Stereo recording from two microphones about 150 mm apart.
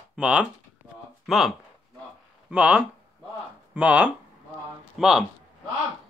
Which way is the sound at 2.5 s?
10° right (ahead or behind).